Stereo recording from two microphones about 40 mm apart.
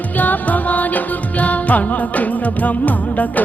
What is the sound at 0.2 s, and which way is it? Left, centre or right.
Music, left.